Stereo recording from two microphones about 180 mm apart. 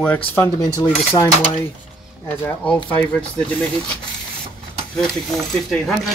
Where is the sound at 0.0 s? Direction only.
10° left (ahead or behind).